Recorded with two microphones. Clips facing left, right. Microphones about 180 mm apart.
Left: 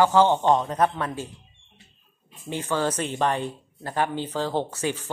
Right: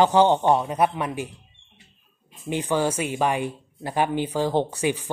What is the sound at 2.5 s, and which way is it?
Speech, 15° right (ahead or behind).